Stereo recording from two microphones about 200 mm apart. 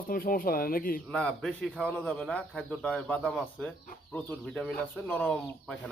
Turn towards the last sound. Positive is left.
turn(degrees=5)  # may be behind; listen again after turning